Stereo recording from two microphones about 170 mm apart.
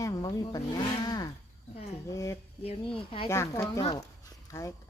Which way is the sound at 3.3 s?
15° left (ahead or behind).